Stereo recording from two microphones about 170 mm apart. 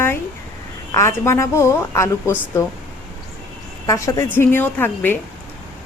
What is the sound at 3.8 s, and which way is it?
A woman's voice, 20° left (ahead or behind).